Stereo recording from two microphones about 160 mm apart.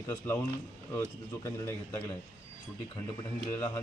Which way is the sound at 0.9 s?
15° left (ahead or behind).